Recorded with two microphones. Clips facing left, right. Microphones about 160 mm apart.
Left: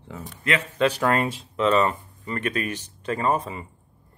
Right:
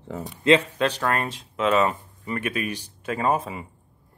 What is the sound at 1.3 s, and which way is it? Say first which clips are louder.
Speech: left 1 dB; 5° right (ahead or behind).